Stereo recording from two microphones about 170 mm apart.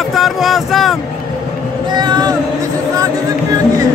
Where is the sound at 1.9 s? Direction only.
25° right (ahead or behind).